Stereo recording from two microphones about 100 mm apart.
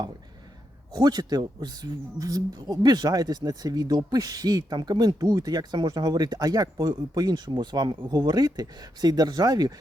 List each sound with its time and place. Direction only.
0.9 s speech: 40° right (ahead or behind)